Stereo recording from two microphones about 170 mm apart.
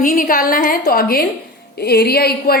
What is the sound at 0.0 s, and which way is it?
A woman's voice, 55° left (ahead or behind).